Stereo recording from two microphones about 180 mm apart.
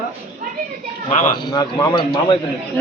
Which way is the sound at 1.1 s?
45° left (ahead or behind).